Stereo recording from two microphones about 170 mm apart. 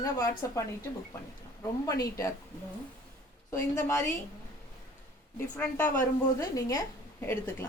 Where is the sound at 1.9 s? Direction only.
20° left (ahead or behind).